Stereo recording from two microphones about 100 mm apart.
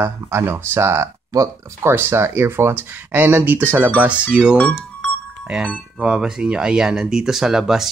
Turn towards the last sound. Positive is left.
turn(degrees=-5)  # may be behind; listen again after turning